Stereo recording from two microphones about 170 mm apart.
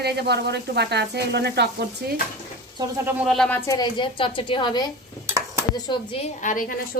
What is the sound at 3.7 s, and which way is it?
A woman's voice, 25° left (ahead or behind).